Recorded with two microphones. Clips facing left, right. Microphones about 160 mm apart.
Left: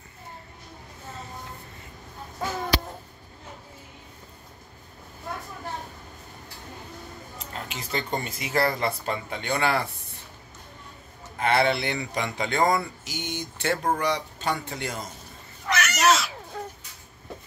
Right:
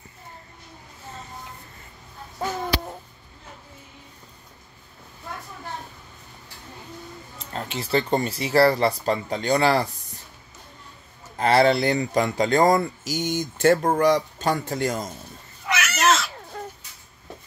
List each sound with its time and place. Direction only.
7.5 s speech: 35° right (ahead or behind)
11.3 s speech: 35° right (ahead or behind)
15.6 s a sound: 5° right (ahead or behind)